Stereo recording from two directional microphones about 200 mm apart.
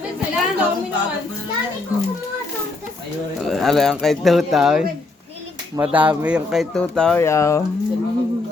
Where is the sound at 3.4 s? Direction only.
Centre (ahead or behind).